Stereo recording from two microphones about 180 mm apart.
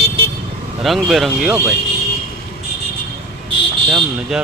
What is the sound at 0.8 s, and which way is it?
Speech, centre (ahead or behind).